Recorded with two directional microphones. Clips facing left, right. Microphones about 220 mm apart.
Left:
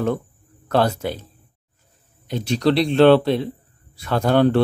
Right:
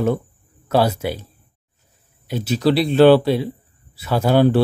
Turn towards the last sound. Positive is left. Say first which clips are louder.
# right 1 dB
turn(degrees=-5)  # may be behind; listen again after turning